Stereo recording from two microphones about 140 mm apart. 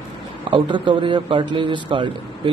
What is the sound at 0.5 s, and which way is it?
A man's voice, 35° right (ahead or behind).